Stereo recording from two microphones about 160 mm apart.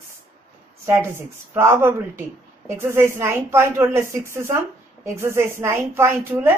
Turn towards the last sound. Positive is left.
turn(degrees=-15)  # may be behind; listen again after turning